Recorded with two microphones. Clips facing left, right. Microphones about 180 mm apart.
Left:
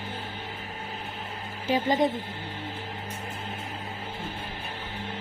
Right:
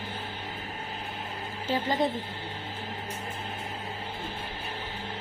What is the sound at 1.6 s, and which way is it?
Speech, 20° left (ahead or behind).